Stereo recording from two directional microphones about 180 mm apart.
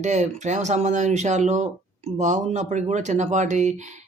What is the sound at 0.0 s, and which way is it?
Speech, 40° right (ahead or behind).